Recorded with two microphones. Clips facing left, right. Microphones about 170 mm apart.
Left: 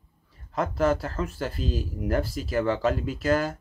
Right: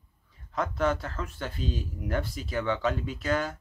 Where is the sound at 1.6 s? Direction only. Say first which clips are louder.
Left 2 dB; centre (ahead or behind).